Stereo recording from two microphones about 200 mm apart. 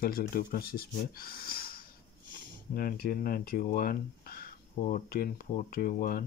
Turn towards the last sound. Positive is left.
turn(degrees=45)  # may be behind; listen again after turning